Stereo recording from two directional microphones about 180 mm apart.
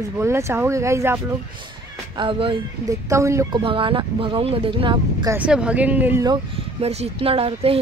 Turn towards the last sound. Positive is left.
turn(degrees=-30)  # may be behind; listen again after turning